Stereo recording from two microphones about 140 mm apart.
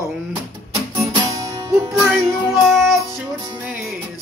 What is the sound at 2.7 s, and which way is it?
Music, centre (ahead or behind).